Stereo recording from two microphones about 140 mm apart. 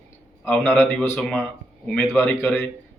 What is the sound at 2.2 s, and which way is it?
Speech, 15° left (ahead or behind).